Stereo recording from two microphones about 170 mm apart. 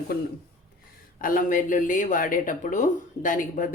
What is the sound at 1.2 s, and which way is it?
Speech, 55° left (ahead or behind).